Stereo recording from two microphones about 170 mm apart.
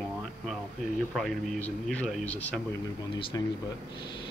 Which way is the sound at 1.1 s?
5° left (ahead or behind).